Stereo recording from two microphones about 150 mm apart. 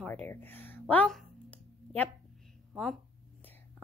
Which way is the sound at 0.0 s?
10° left (ahead or behind).